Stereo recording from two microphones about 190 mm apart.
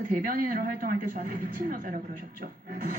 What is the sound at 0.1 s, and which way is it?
Speech, 45° right (ahead or behind).